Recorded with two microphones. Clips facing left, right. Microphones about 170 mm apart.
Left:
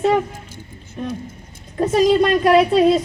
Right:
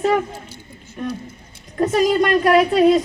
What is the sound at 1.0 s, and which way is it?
A woman's voice, 25° left (ahead or behind).